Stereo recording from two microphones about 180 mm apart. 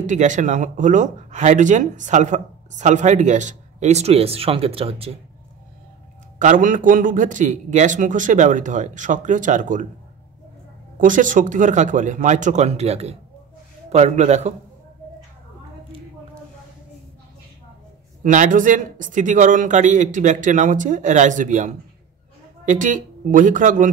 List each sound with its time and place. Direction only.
0.0 s speech: 45° right (ahead or behind)
6.4 s speech: 45° right (ahead or behind)
11.0 s speech: 45° right (ahead or behind)
18.2 s speech: 45° right (ahead or behind)